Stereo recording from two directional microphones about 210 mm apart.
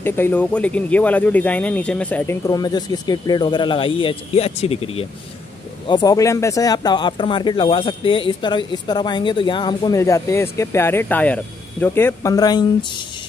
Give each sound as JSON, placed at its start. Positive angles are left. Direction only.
{"t": 0.0, "sound": "speech", "side_deg": 10}